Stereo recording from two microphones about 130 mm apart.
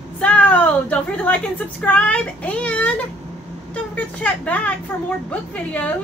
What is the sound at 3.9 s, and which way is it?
A woman's voice, 10° left (ahead or behind).